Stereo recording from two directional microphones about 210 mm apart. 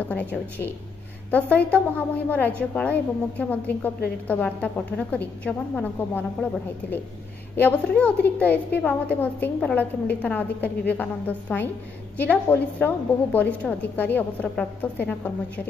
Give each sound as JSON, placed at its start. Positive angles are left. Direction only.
{"t": 0.1, "sound": "a woman's voice", "side_deg": 5}